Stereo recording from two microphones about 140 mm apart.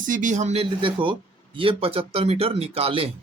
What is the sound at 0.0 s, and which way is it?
Speech, 65° right (ahead or behind).